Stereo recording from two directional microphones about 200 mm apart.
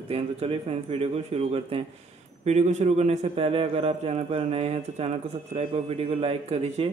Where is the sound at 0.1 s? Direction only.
30° right (ahead or behind).